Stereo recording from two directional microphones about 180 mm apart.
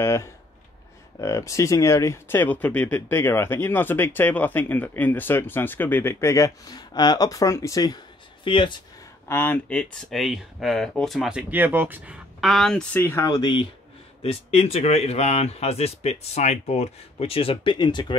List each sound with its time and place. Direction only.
0.0 s speech: 15° left (ahead or behind)
9.3 s speech: 10° left (ahead or behind)